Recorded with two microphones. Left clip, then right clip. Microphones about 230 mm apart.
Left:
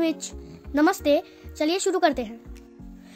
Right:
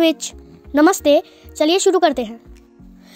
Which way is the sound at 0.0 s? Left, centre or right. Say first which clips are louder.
Right 9 dB; right.